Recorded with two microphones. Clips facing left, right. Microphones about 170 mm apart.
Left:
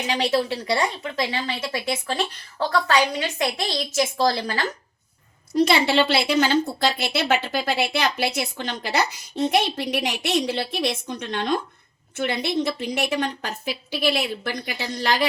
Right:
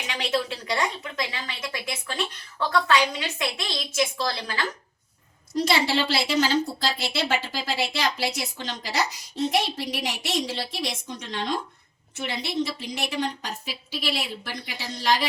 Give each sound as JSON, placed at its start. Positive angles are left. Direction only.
{"t": 0.1, "sound": "a woman's voice", "side_deg": 35}
{"t": 5.5, "sound": "a woman's voice", "side_deg": 60}